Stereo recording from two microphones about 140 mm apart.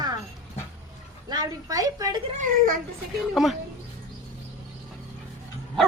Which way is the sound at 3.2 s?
Centre (ahead or behind).